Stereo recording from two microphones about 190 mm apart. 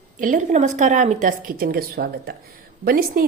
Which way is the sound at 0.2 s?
40° right (ahead or behind).